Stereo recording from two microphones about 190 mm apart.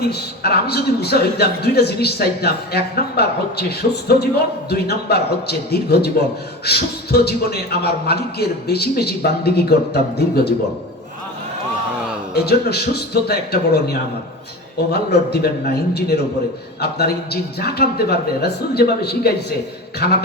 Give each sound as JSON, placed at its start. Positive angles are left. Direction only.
{"t": 0.1, "sound": "a man's voice", "side_deg": 55}
{"t": 12.3, "sound": "a man's voice", "side_deg": 55}
{"t": 14.9, "sound": "a man's voice", "side_deg": 55}